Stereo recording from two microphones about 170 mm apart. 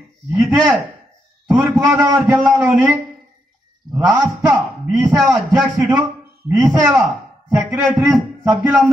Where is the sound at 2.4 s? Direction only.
5° right (ahead or behind).